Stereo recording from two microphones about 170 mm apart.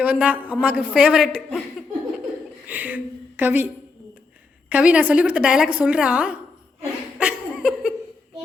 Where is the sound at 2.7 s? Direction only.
10° right (ahead or behind).